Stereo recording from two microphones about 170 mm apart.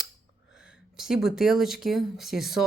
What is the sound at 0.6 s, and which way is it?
Speech, 5° right (ahead or behind).